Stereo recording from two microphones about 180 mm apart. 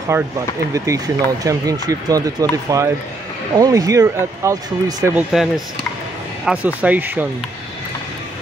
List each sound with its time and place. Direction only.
0.1 s speech: 15° right (ahead or behind)
6.4 s speech: 5° right (ahead or behind)